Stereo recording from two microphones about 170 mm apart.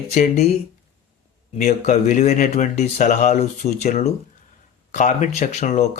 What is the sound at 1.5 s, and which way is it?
Speech, 45° left (ahead or behind).